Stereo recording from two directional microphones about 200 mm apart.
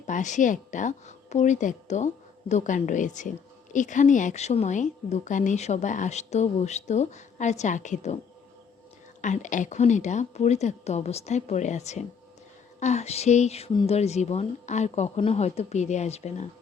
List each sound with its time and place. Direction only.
0.1 s speech: 40° left (ahead or behind)
9.2 s speech: 40° left (ahead or behind)